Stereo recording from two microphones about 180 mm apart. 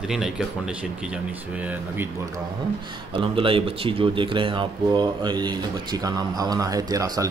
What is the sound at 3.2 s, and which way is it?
Speech, 30° right (ahead or behind).